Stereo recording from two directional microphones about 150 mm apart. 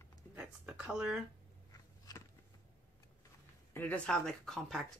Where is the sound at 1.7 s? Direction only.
25° left (ahead or behind).